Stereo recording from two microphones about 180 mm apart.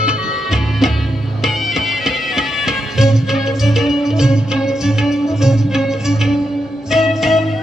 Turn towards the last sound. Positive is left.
turn(degrees=0)  # may be behind; listen again after turning